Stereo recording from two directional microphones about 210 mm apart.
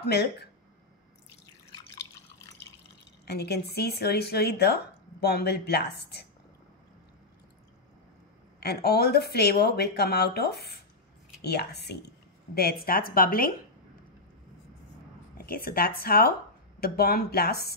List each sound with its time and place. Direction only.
0.0 s a woman's voice: 50° left (ahead or behind)
3.3 s a woman's voice: 50° left (ahead or behind)
8.5 s a woman's voice: 50° left (ahead or behind)
15.3 s a woman's voice: 45° left (ahead or behind)